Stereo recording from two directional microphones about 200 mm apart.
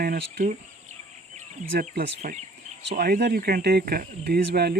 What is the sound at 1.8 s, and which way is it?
Speech, 45° right (ahead or behind).